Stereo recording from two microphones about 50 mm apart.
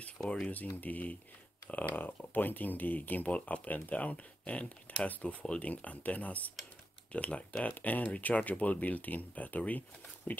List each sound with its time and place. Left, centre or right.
0.7 s speech: left